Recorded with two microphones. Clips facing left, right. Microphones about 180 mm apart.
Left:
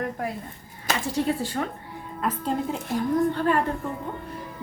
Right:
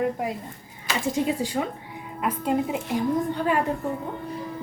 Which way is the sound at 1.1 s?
15° right (ahead or behind).